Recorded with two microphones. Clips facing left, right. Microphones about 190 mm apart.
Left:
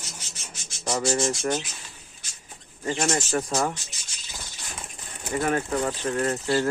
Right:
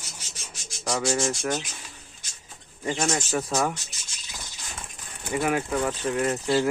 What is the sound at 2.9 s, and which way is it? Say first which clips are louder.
Speech: left 1 dB; centre (ahead or behind).